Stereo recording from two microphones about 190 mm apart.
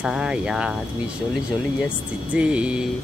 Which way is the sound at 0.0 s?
5° right (ahead or behind).